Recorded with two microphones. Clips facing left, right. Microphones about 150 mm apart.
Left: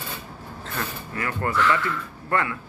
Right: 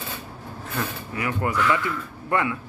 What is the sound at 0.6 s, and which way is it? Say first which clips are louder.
A man's voice: right 2 dB; 15° right (ahead or behind).